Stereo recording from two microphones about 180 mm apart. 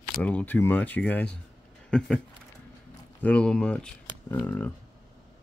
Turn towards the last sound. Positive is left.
turn(degrees=10)  # may be behind; listen again after turning